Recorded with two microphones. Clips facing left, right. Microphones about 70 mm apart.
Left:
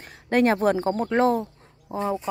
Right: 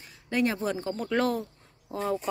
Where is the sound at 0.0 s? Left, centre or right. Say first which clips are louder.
Left 7 dB; left.